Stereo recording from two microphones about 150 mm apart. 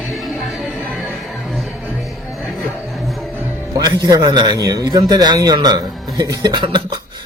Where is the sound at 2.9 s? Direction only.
Centre (ahead or behind).